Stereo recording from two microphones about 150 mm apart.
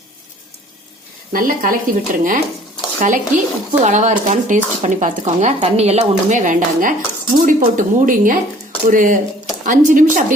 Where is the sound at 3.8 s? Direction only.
55° right (ahead or behind).